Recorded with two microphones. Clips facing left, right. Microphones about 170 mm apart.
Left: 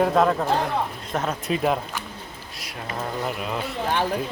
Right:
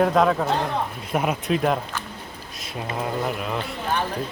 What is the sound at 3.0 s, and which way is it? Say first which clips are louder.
Speech: right 2 dB; centre (ahead or behind).